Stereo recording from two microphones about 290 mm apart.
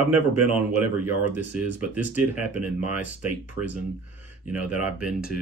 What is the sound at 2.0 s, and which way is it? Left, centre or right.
Speech, centre.